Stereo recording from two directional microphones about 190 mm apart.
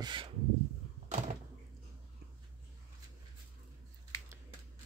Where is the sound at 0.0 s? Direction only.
25° right (ahead or behind).